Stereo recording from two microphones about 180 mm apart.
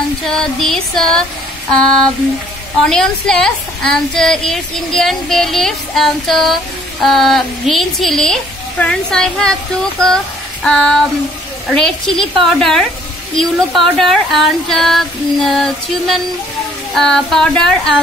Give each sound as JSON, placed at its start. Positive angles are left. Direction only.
{"t": 0.2, "sound": "a woman's voice", "side_deg": 0}
{"t": 2.8, "sound": "a woman's voice", "side_deg": 5}
{"t": 10.0, "sound": "child singing", "side_deg": 5}
{"t": 11.7, "sound": "a woman's voice", "side_deg": 0}